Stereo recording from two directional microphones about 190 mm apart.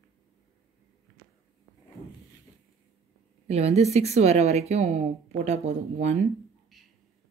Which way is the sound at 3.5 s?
35° right (ahead or behind).